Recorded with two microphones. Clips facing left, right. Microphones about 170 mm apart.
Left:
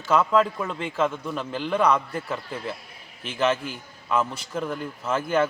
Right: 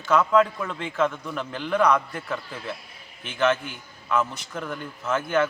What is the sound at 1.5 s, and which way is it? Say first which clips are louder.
Speech: even; 5° left (ahead or behind).